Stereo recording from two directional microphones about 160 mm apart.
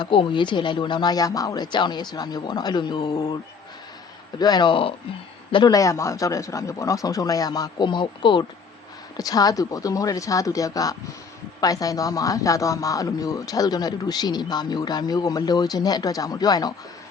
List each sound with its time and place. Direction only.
0.0 s speech: 30° left (ahead or behind)
4.4 s speech: 25° left (ahead or behind)